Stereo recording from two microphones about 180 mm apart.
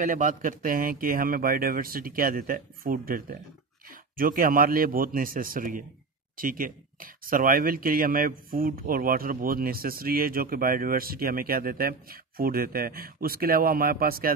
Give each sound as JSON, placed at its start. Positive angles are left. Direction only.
{"t": 0.0, "sound": "speech", "side_deg": -45}